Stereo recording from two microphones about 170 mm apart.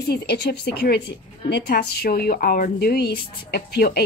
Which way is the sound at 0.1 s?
75° left (ahead or behind).